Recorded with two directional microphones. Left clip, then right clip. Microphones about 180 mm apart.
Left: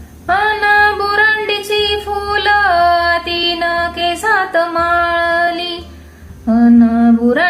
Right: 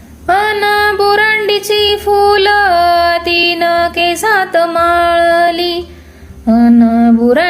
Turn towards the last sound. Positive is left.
turn(degrees=-35)  # may be behind; listen again after turning